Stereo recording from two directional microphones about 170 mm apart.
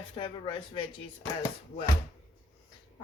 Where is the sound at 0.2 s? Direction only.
30° left (ahead or behind).